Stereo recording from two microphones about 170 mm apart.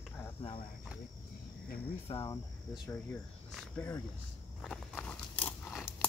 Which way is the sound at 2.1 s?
20° left (ahead or behind).